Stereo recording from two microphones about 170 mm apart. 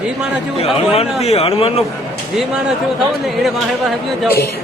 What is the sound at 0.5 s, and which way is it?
Speech, 35° left (ahead or behind).